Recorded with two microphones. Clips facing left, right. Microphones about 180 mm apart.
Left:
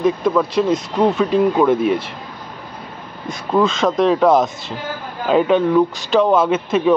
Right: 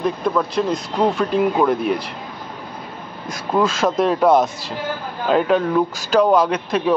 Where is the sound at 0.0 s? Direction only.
Centre (ahead or behind).